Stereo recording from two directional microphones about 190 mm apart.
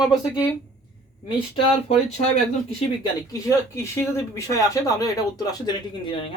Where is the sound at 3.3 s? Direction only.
15° left (ahead or behind).